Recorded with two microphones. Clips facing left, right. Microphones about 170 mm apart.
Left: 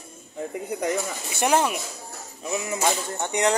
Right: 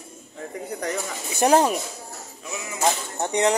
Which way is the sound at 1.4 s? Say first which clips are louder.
Right 4 dB; 35° right (ahead or behind).